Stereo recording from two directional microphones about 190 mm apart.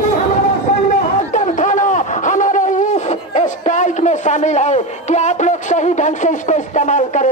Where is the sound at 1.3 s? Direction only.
40° left (ahead or behind).